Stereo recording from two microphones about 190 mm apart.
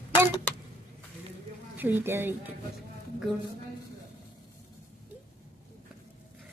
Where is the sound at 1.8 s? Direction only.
10° right (ahead or behind).